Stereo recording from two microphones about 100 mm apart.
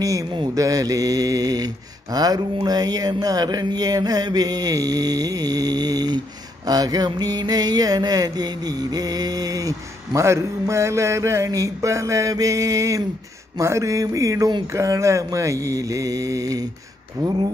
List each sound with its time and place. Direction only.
0.6 s speech: 35° right (ahead or behind)